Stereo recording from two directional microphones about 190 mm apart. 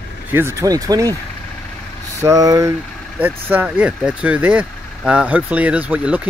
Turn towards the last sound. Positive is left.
turn(degrees=-5)  # may be behind; listen again after turning